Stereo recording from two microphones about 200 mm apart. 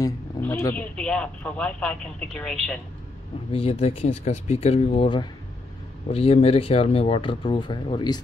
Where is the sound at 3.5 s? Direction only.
30° left (ahead or behind).